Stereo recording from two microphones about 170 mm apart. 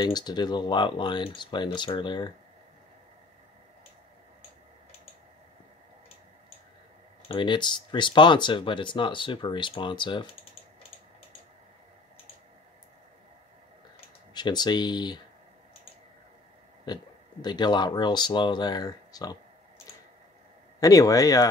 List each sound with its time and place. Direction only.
0.0 s speech: 25° left (ahead or behind)
7.2 s speech: 30° left (ahead or behind)
14.3 s speech: 25° left (ahead or behind)
16.8 s speech: 25° left (ahead or behind)
20.8 s speech: 20° left (ahead or behind)